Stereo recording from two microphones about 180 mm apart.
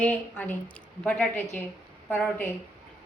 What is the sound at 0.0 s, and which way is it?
A woman's voice, 10° left (ahead or behind).